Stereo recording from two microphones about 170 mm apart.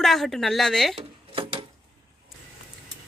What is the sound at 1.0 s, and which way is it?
Dishes, 30° right (ahead or behind).